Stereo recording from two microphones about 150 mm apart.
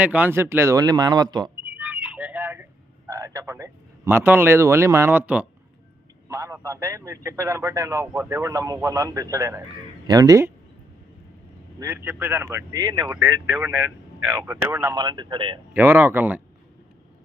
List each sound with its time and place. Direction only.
0.0 s a man's voice: 10° right (ahead or behind); by 1.5 s 30° right (ahead or behind)
1.6 s a sound: 10° right (ahead or behind)
3.1 s a man's voice: 20° right (ahead or behind)
6.2 s a man's voice: 20° right (ahead or behind)
11.8 s a man's voice: 15° right (ahead or behind)
14.9 s speech: 30° right (ahead or behind)
15.7 s a man's voice: 15° right (ahead or behind)